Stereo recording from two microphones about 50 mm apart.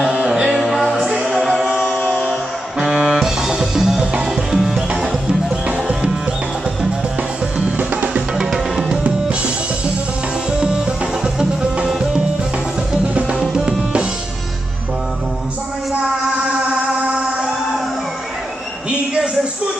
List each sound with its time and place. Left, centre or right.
0.0 s music: centre
1.0 s music: centre
1.3 s music: centre
2.8 s music: centre
7.7 s music: right
8.4 s music: centre
10.6 s music: centre
13.4 s music: centre
18.9 s a sound: centre